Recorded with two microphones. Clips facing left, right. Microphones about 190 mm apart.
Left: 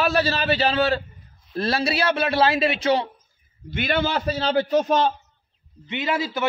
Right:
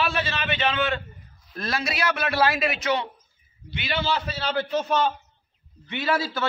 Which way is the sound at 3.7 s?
50° left (ahead or behind).